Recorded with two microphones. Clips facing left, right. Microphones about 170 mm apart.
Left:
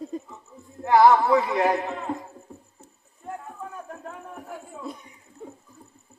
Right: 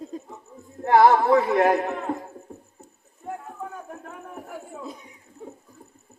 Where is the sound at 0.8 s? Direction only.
55° right (ahead or behind).